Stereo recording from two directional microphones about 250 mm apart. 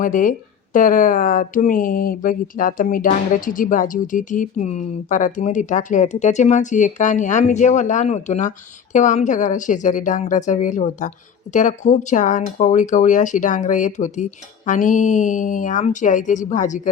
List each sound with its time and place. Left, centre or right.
0.0 s speech: left